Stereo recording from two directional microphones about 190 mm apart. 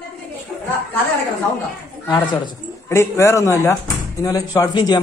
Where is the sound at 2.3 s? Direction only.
20° left (ahead or behind).